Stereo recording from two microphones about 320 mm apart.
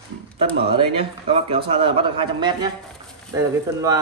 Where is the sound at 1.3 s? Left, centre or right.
Centre.